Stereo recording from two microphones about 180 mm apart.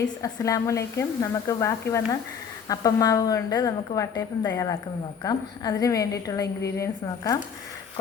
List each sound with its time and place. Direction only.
0.2 s a woman's voice: 20° left (ahead or behind)